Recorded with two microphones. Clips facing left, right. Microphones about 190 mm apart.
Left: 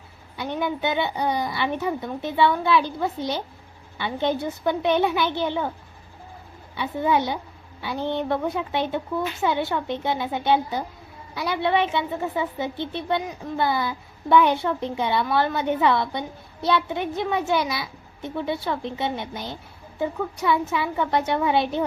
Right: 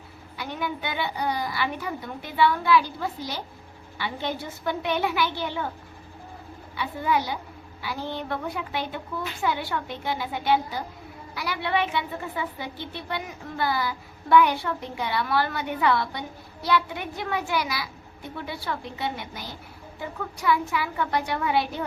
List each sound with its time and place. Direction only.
0.3 s a woman's voice: 20° left (ahead or behind)
6.7 s a woman's voice: 20° left (ahead or behind)